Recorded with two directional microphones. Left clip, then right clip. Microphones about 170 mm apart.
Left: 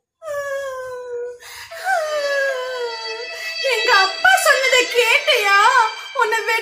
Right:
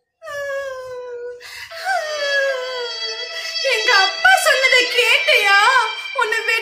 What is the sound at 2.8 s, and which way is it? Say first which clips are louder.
Baby cry: right 1 dB; 10° left (ahead or behind).